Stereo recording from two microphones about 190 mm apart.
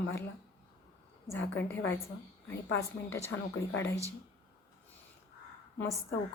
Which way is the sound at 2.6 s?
85° left.